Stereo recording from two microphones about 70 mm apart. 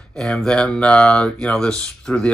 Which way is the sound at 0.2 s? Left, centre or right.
Centre.